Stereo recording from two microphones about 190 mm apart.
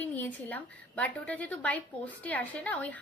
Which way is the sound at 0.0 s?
10° left (ahead or behind).